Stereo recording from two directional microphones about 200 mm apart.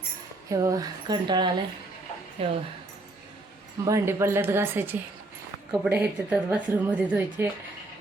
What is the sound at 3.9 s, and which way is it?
A woman's voice, 15° right (ahead or behind).